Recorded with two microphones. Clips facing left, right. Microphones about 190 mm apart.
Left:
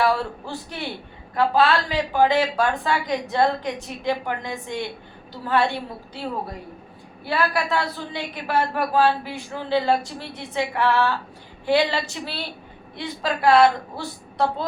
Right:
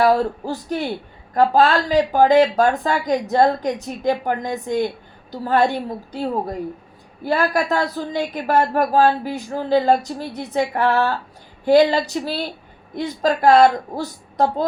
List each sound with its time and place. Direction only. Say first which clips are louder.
0.0 s speech: right 6 dB; 40° right (ahead or behind)
7.3 s speech: right 4 dB; 45° right (ahead or behind)